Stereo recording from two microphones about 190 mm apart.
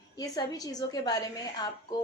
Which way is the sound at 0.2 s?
20° left (ahead or behind).